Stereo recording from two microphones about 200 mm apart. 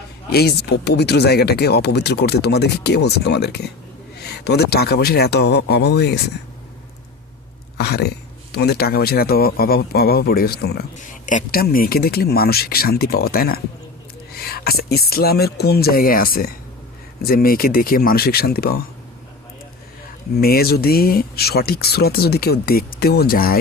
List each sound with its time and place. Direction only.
0.3 s speech: 55° left (ahead or behind)
7.8 s speech: 55° left (ahead or behind)
10.9 s speech: 40° left (ahead or behind)
20.4 s speech: 50° left (ahead or behind)